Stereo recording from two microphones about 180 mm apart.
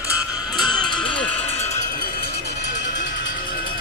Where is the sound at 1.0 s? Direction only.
30° left (ahead or behind).